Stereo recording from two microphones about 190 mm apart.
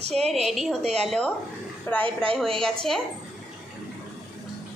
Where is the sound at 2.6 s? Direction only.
Centre (ahead or behind).